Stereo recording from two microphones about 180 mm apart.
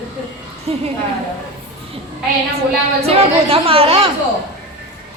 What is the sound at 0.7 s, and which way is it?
Speech, 35° right (ahead or behind).